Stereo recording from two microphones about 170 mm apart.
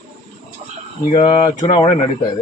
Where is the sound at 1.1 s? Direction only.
30° left (ahead or behind).